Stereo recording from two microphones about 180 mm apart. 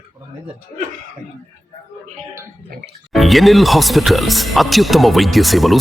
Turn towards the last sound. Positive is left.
turn(degrees=0)  # may be behind; listen again after turning